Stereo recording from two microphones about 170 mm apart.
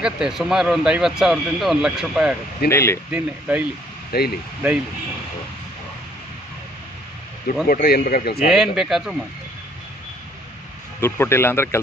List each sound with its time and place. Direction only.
0.0 s speech: 5° right (ahead or behind)
2.7 s speech: 15° left (ahead or behind)
3.1 s speech: 10° right (ahead or behind)
4.1 s speech: 65° left (ahead or behind)
7.6 s speech: 65° left (ahead or behind)
8.5 s speech: centre (ahead or behind)
11.0 s speech: 15° left (ahead or behind)